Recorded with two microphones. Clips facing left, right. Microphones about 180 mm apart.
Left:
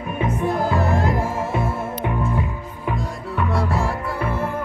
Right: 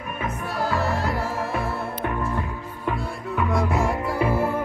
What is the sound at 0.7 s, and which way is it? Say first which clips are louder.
Music: left 4 dB; 50° left (ahead or behind).